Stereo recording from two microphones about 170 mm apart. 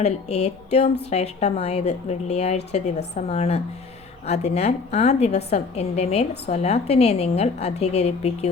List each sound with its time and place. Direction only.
0.0 s a woman's voice: 40° left (ahead or behind)